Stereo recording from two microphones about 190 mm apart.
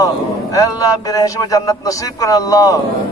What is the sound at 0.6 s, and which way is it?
A man's voice, 20° left (ahead or behind).